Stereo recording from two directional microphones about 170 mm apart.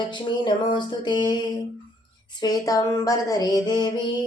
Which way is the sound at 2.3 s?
25° left (ahead or behind).